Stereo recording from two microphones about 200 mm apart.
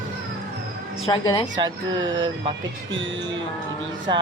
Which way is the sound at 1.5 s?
20° right (ahead or behind).